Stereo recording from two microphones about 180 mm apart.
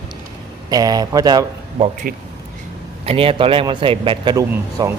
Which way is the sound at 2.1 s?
50° right (ahead or behind).